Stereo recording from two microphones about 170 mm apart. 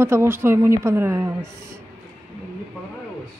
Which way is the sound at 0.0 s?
15° right (ahead or behind).